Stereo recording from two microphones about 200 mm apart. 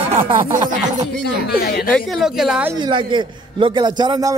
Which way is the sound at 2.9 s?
25° right (ahead or behind).